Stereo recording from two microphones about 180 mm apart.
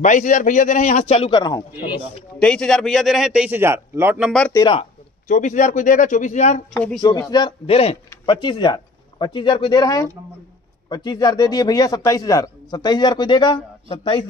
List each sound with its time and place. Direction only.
0.0 s a man's voice: 45° left (ahead or behind); by 1.6 s 25° left (ahead or behind)
2.3 s a man's voice: 5° left (ahead or behind); by 4.3 s 10° right (ahead or behind)
4.5 s a man's voice: 20° left (ahead or behind)
5.3 s speech: 45° left (ahead or behind)
6.7 s speech: 5° left (ahead or behind)
7.0 s a man's voice: 20° left (ahead or behind)